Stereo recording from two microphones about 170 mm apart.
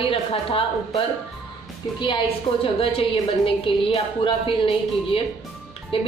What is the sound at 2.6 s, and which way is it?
A woman's voice, 35° left (ahead or behind).